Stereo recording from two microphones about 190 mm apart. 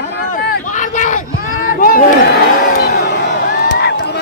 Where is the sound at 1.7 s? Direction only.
45° left (ahead or behind).